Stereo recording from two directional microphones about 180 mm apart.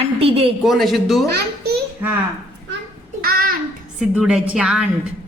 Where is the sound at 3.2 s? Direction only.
55° right (ahead or behind).